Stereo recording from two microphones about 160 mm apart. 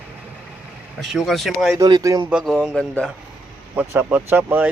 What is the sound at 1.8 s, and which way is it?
Speech, 20° right (ahead or behind).